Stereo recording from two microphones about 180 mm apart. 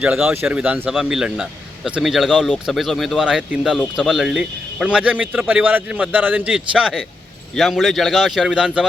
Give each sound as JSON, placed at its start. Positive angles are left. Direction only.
{"t": 0.0, "sound": "a man's voice", "side_deg": -5}